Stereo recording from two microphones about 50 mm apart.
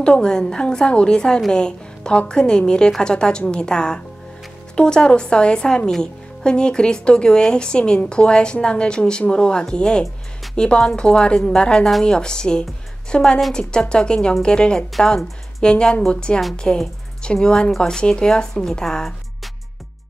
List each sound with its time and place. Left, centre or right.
0.0 s a woman's voice: centre